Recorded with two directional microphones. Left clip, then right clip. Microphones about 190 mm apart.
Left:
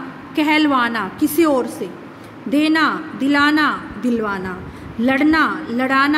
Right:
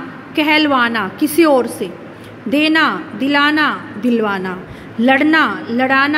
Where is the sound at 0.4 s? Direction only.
Centre (ahead or behind).